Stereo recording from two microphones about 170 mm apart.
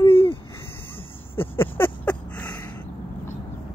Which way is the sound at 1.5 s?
10° left (ahead or behind).